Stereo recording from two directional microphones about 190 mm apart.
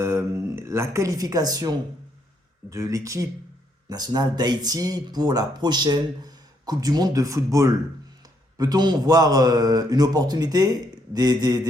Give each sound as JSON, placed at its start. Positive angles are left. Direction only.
{"t": 0.0, "sound": "speech", "side_deg": -15}